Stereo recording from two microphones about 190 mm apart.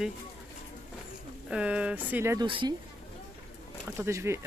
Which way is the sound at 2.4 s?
25° right (ahead or behind).